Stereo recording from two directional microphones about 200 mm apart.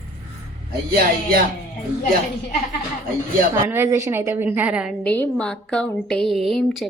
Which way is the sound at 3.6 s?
10° right (ahead or behind).